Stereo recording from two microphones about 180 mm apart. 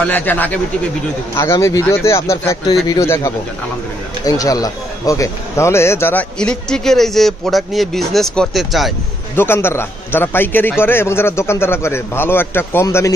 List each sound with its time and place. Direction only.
0.0 s a man's voice: 10° left (ahead or behind)
9.3 s a man's voice: 15° left (ahead or behind)